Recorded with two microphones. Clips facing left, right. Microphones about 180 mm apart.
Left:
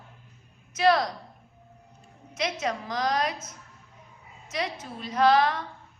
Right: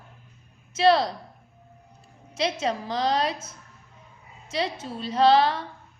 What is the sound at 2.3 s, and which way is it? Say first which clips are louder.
A woman's voice: right 3 dB; 30° right (ahead or behind).